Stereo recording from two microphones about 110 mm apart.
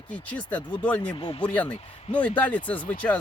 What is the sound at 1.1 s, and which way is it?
Speech, 50° left (ahead or behind).